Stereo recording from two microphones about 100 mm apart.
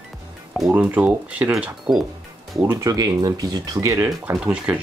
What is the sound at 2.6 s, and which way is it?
Speech, 30° right (ahead or behind).